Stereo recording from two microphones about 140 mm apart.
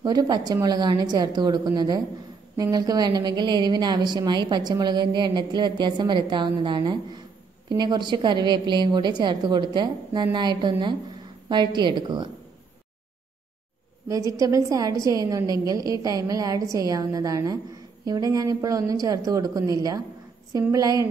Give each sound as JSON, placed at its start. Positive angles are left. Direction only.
{"t": 0.0, "sound": "a woman's voice", "side_deg": -30}
{"t": 14.0, "sound": "a woman's voice", "side_deg": -25}